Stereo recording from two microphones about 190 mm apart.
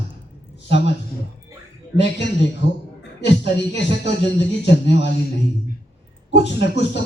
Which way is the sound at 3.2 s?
65° left (ahead or behind).